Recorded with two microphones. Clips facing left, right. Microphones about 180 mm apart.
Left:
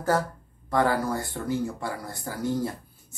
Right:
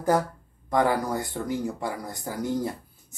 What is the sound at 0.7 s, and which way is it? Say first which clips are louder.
Speech: right 1 dB; 15° right (ahead or behind).